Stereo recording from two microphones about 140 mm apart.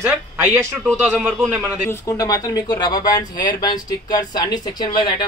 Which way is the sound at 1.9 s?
25° left (ahead or behind).